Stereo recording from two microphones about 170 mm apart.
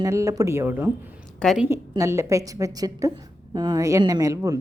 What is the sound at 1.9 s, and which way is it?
A woman's voice, 15° right (ahead or behind).